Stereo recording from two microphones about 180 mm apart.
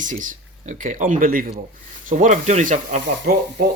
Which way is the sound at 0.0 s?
45° right (ahead or behind).